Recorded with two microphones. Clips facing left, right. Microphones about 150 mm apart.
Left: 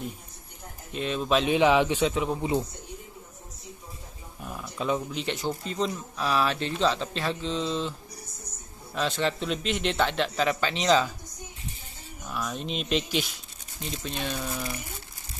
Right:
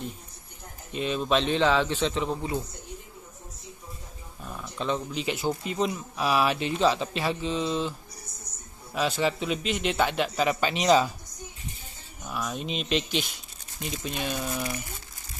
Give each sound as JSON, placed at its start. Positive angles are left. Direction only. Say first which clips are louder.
{"t": 0.9, "sound": "a man's voice", "louder": "even", "side_deg": 0}
{"t": 4.4, "sound": "a sound", "louder": "left 1 dB", "side_deg": 10}
{"t": 5.2, "sound": "speech", "louder": "right 2 dB", "side_deg": -5}
{"t": 8.9, "sound": "speech", "louder": "right 1 dB", "side_deg": -10}
{"t": 12.3, "sound": "speech", "louder": "even", "side_deg": -5}
{"t": 14.5, "sound": "speech", "louder": "right 2 dB", "side_deg": -20}